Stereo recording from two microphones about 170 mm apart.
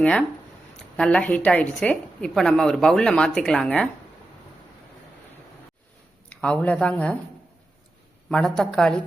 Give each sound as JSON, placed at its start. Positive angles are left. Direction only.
{"t": 0.0, "sound": "a woman's voice", "side_deg": 5}
{"t": 6.2, "sound": "speech", "side_deg": 5}
{"t": 8.3, "sound": "a woman's voice", "side_deg": 5}